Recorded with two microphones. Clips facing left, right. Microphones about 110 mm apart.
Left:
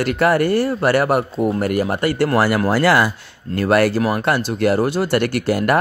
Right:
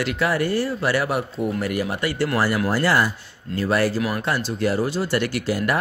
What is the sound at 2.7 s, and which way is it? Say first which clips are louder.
Speech: left 5 dB; 85° left.